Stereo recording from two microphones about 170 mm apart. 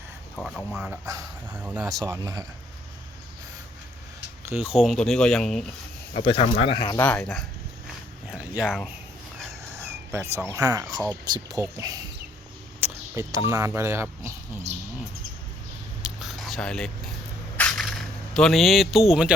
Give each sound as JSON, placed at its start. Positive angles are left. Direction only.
{"t": 0.3, "sound": "speech", "side_deg": 0}
{"t": 1.0, "sound": "speech", "side_deg": -20}
{"t": 1.6, "sound": "speech", "side_deg": -10}
{"t": 1.9, "sound": "speech", "side_deg": -20}
{"t": 4.7, "sound": "speech", "side_deg": 0}
{"t": 6.1, "sound": "speech", "side_deg": 30}
{"t": 7.0, "sound": "speech", "side_deg": 10}
{"t": 8.3, "sound": "a sound", "side_deg": -5}
{"t": 9.7, "sound": "speech", "side_deg": -15}
{"t": 12.8, "sound": "a sound", "side_deg": -15}
{"t": 13.5, "sound": "speech", "side_deg": -15}
{"t": 14.7, "sound": "speech", "side_deg": -40}
{"t": 16.0, "sound": "a sound", "side_deg": 0}